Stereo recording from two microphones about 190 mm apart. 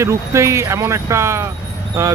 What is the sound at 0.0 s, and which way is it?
Speech, 15° right (ahead or behind).